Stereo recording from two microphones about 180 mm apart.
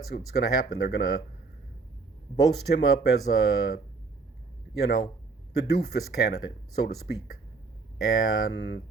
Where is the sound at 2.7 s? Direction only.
60° left (ahead or behind).